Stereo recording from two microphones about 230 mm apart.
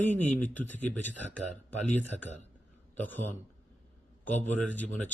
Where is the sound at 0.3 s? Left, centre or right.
Centre.